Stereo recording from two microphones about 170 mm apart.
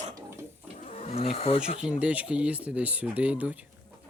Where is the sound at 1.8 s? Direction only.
5° right (ahead or behind).